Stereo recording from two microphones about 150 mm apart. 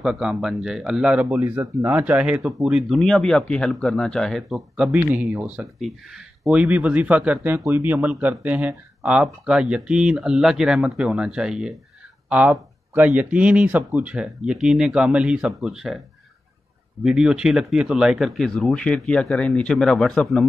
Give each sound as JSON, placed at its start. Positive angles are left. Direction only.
{"t": 0.0, "sound": "a man's voice", "side_deg": -5}
{"t": 17.0, "sound": "speech", "side_deg": -5}